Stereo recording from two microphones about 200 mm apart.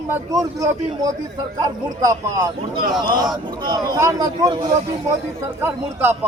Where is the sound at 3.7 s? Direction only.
20° right (ahead or behind).